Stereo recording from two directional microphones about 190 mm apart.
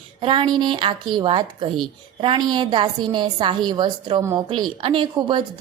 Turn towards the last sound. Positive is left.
turn(degrees=-25)  # may be behind; listen again after turning